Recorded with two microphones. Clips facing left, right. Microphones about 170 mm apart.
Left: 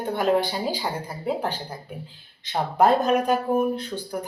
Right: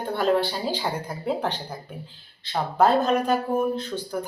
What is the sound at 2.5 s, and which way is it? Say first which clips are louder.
Speech: left 1 dB; 15° left (ahead or behind).